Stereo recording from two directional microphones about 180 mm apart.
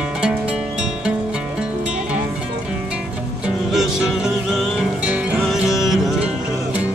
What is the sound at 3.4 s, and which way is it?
Music, 5° right (ahead or behind).